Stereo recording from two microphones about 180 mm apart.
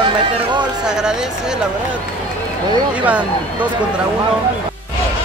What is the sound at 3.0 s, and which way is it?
Speech, 10° right (ahead or behind).